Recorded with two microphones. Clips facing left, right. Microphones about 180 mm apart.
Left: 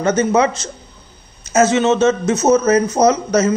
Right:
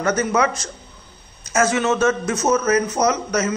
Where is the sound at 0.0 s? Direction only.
25° left (ahead or behind).